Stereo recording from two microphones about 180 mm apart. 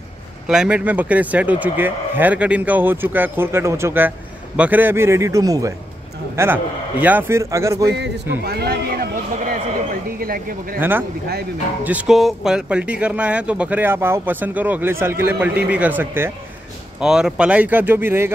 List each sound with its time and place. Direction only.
0.5 s speech: 5° right (ahead or behind)
7.9 s speech: 75° right (ahead or behind); by 9.2 s 55° right (ahead or behind)
10.2 s speech: 55° right (ahead or behind)
10.8 s speech: 10° right (ahead or behind)